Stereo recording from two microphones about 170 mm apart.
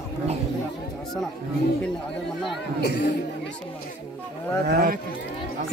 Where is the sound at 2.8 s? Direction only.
80° left.